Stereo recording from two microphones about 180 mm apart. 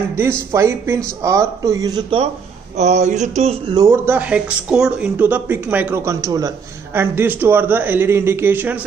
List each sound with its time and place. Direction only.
0.5 s speech: 15° right (ahead or behind)
2.8 s a sound: 40° right (ahead or behind)
3.7 s speech: 15° right (ahead or behind)